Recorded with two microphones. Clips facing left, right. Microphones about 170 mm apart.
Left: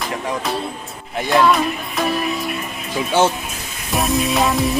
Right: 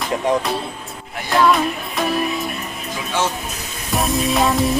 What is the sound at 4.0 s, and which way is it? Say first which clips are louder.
Music: even; centre (ahead or behind).